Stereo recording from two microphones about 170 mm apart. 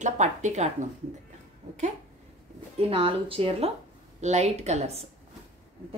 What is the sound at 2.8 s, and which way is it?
Speech, 35° right (ahead or behind).